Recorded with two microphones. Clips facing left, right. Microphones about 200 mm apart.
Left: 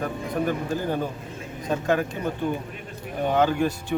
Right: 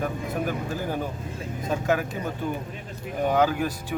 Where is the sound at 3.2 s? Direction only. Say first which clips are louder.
Left 1 dB; 10° right (ahead or behind).